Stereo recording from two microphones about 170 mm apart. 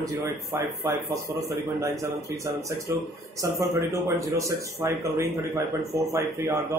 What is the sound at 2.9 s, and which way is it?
Speech, 15° right (ahead or behind).